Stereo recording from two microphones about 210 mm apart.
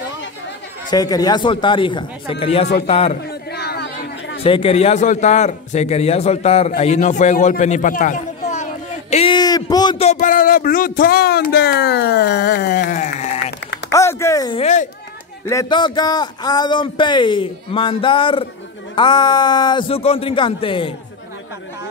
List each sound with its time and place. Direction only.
0.8 s a man's voice: 15° left (ahead or behind)
3.2 s chatter: 50° left (ahead or behind)
4.4 s a man's voice: 25° left (ahead or behind)
9.1 s a man's voice: 25° left (ahead or behind)
13.9 s speech: 15° left (ahead or behind)
14.6 s a man's voice: 35° left (ahead or behind)
15.4 s a man's voice: 20° left (ahead or behind)